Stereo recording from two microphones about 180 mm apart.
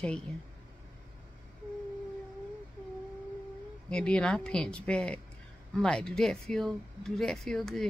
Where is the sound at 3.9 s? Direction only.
5° left (ahead or behind).